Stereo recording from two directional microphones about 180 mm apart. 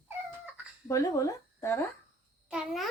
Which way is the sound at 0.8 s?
15° left (ahead or behind).